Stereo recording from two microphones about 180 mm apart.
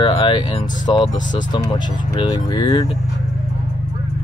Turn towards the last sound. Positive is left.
turn(degrees=25)  # may be behind; listen again after turning